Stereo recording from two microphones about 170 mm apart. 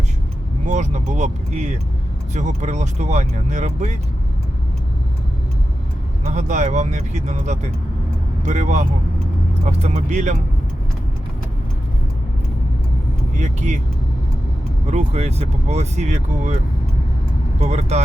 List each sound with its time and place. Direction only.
0.7 s speech: 45° right (ahead or behind)
6.2 s speech: 45° right (ahead or behind)
13.3 s speech: 45° right (ahead or behind)
14.8 s speech: 40° right (ahead or behind)
17.6 s speech: 40° right (ahead or behind)